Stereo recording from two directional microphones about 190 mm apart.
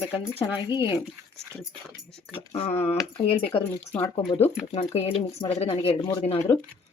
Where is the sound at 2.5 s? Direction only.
30° left (ahead or behind).